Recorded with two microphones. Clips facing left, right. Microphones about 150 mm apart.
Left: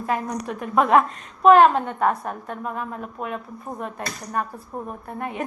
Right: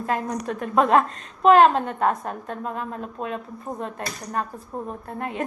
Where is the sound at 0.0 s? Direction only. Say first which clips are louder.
Even; 15° left (ahead or behind).